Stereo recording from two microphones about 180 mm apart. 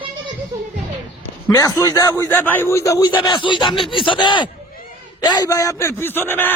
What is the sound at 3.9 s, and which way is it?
A man's voice, 30° left (ahead or behind).